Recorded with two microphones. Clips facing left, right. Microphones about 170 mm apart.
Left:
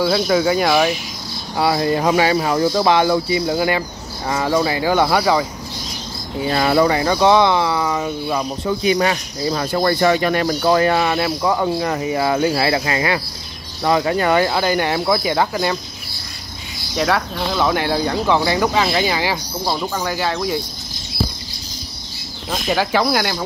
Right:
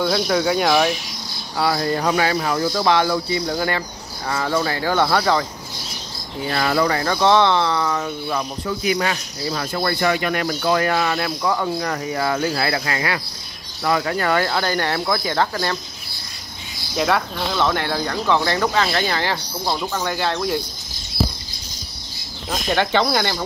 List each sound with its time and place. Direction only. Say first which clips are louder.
0.0 s speech: left 3 dB; 5° left (ahead or behind)
1.6 s speech: left 3 dB; 20° left (ahead or behind)
6.4 s speech: left 4 dB; 20° left (ahead or behind)
8.6 s speech: left 5 dB; 30° left (ahead or behind); by 15.8 s 10° left (ahead or behind)
16.9 s speech: left 1 dB; centre (ahead or behind)
22.5 s speech: left 1 dB; 5° left (ahead or behind)